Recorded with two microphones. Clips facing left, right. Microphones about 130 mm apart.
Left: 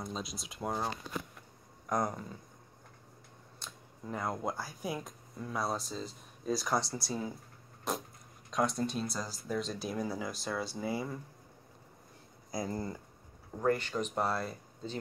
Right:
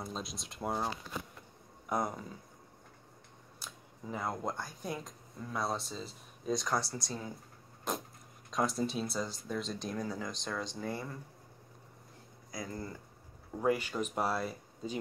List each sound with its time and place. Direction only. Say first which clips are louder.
0.0 s speech: left 1 dB; centre (ahead or behind)
3.5 s speech: even; 5° right (ahead or behind)
7.9 s vehicle: left 1 dB; centre (ahead or behind)
8.5 s speech: left 1 dB; centre (ahead or behind)
12.4 s speech: left 5 dB; 30° left (ahead or behind)
13.6 s speech: even; 5° right (ahead or behind)